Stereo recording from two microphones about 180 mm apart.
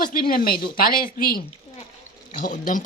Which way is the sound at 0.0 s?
55° left (ahead or behind).